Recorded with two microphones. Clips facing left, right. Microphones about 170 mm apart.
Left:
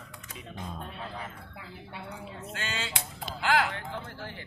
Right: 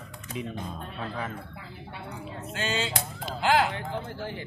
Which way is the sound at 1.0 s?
90° right.